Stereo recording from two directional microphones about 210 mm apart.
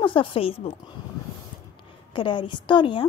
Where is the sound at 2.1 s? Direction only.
25° left (ahead or behind).